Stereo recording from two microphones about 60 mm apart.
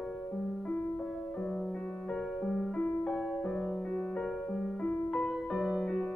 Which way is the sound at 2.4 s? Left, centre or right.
Centre.